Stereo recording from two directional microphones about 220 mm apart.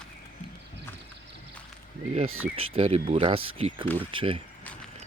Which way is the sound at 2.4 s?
25° right (ahead or behind).